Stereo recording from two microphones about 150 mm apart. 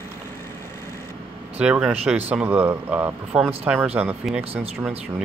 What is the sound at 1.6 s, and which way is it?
Speech, 5° right (ahead or behind).